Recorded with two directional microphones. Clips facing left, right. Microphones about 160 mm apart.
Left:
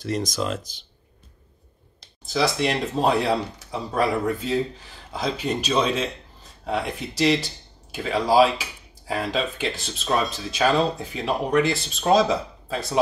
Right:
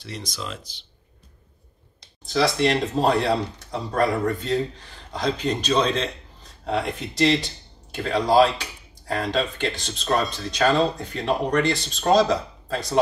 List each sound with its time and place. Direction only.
0.0 s speech: 45° left (ahead or behind)
2.2 s speech: centre (ahead or behind)